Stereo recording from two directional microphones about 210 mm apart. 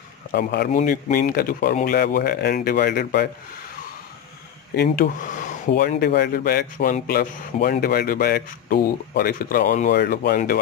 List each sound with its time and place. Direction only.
0.3 s speech: 50° left (ahead or behind)
0.7 s speech: 30° left (ahead or behind); by 3.3 s 45° left (ahead or behind)
4.7 s speech: 45° left (ahead or behind)
5.7 s speech: 50° left (ahead or behind)
9.9 s speech: 50° left (ahead or behind)